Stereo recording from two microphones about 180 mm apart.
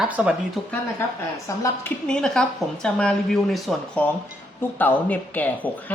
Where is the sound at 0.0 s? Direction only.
5° right (ahead or behind).